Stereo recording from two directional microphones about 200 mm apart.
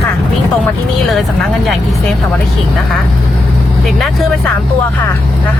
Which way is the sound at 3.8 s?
Centre (ahead or behind).